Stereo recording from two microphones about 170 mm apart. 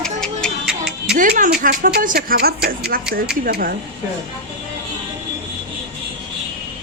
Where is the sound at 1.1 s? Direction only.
55° right (ahead or behind).